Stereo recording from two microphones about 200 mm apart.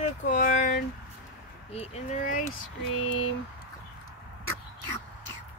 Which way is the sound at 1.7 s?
30° left (ahead or behind).